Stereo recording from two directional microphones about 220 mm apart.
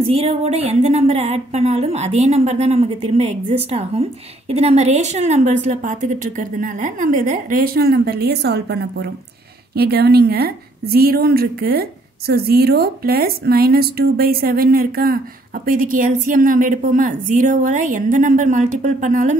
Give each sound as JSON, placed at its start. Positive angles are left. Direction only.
{"t": 0.0, "sound": "a woman's voice", "side_deg": -25}